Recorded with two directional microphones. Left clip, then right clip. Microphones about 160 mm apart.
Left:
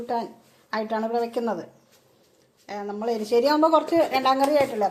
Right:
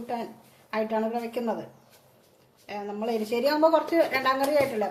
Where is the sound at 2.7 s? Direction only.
35° left (ahead or behind).